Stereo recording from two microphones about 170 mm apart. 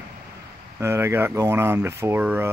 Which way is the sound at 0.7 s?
15° right (ahead or behind).